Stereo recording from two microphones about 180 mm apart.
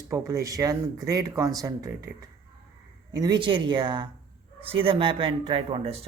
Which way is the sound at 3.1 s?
20° right (ahead or behind).